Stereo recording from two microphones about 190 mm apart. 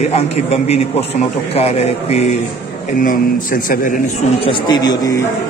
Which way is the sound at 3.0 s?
50° left (ahead or behind).